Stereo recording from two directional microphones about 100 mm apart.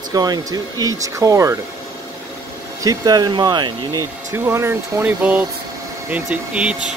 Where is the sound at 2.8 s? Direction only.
40° right (ahead or behind).